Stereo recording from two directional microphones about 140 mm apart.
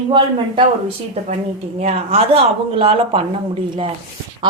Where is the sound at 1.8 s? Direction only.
45° right (ahead or behind).